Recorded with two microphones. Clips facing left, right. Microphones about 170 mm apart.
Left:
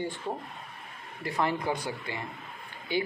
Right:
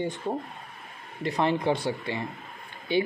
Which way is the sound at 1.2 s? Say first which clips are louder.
Right 4 dB; 20° right (ahead or behind).